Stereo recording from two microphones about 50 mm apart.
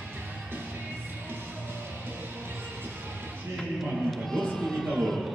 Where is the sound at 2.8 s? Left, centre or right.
Right.